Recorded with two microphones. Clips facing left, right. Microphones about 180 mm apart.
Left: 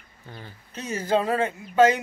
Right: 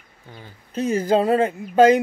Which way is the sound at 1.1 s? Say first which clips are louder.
Right 3 dB; 35° right (ahead or behind).